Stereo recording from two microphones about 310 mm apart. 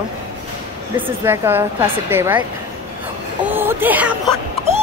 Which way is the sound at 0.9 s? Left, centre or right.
Centre.